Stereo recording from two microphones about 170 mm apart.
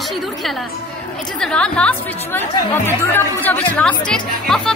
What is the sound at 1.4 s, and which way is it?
A woman's voice, 5° left (ahead or behind).